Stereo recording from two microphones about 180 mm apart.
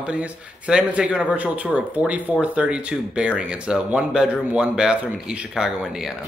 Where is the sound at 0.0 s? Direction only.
5° right (ahead or behind).